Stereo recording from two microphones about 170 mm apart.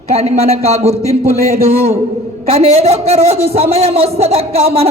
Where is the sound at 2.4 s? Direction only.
35° right (ahead or behind).